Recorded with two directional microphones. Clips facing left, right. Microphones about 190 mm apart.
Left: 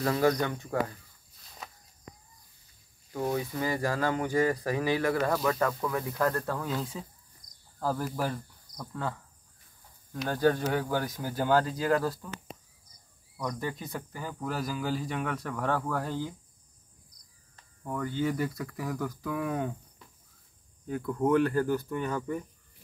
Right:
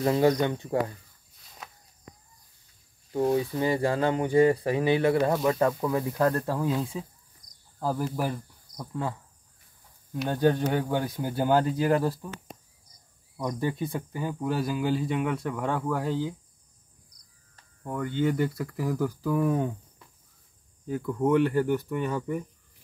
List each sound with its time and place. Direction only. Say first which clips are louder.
0.0 s speech: right 4 dB; 20° right (ahead or behind)
3.1 s speech: right 6 dB; 20° right (ahead or behind)
10.2 s speech: right 2 dB; 20° right (ahead or behind)
13.4 s speech: right 5 dB; 20° right (ahead or behind)
18.3 s speech: right 4 dB; 5° right (ahead or behind)
20.9 s speech: right 2 dB; centre (ahead or behind)
21.5 s speech: right 2 dB; 15° right (ahead or behind)